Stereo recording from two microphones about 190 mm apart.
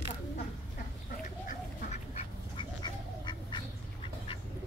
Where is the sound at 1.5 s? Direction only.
35° left (ahead or behind).